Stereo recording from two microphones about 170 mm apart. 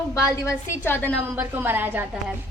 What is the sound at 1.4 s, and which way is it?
Speech, 10° right (ahead or behind).